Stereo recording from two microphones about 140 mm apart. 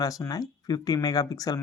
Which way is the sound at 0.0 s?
25° left (ahead or behind).